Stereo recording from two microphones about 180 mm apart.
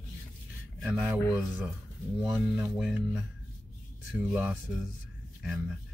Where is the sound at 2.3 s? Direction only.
Centre (ahead or behind).